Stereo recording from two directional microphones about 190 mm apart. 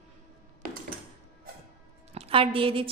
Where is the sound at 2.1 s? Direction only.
30° right (ahead or behind).